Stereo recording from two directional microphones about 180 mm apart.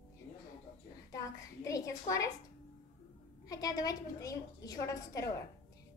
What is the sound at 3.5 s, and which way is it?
A woman's voice, 20° left (ahead or behind).